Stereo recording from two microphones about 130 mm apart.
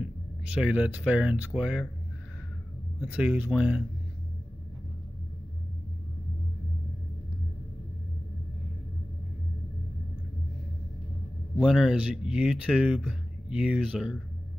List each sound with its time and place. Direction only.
0.0 s speech: 10° right (ahead or behind)
3.1 s speech: 10° right (ahead or behind)
11.5 s speech: 5° right (ahead or behind)